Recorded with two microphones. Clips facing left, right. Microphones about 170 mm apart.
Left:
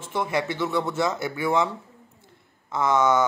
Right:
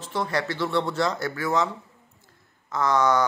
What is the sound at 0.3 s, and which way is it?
Speech, 20° left (ahead or behind).